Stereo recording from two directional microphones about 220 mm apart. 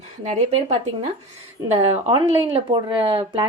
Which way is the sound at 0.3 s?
30° right (ahead or behind).